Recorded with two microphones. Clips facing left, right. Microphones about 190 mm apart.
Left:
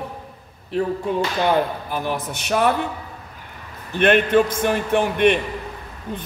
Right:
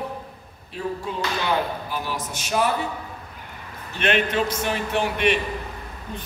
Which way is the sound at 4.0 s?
55° left (ahead or behind).